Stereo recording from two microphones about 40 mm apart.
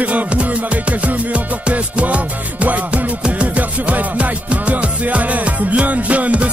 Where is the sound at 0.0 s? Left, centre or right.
Right.